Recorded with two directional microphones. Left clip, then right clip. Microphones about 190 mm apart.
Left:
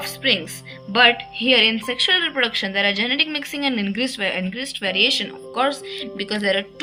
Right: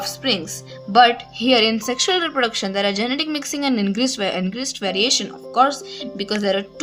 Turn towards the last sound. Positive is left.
turn(degrees=-45)  # may be behind; listen again after turning